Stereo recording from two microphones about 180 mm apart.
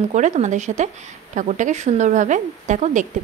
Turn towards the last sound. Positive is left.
turn(degrees=-45)  # may be behind; listen again after turning